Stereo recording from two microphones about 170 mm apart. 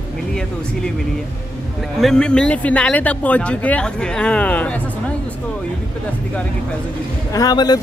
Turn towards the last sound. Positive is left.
turn(degrees=25)  # may be behind; listen again after turning